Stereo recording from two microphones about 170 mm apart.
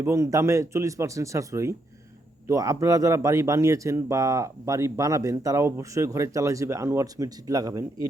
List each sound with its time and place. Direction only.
0.0 s speech: 15° right (ahead or behind)